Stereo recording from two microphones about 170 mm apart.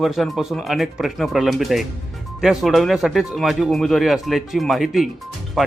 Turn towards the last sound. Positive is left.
turn(degrees=0)  # may be behind; listen again after turning